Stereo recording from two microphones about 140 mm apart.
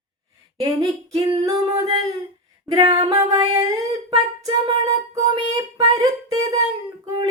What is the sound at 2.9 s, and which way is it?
Singing, 25° right (ahead or behind).